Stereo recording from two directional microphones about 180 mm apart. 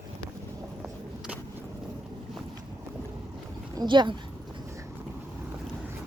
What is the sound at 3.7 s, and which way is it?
Speech, 25° right (ahead or behind).